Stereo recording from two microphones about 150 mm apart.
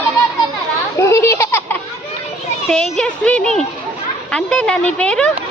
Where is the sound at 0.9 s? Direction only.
20° left (ahead or behind).